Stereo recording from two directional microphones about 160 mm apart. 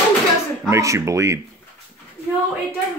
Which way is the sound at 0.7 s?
20° right (ahead or behind).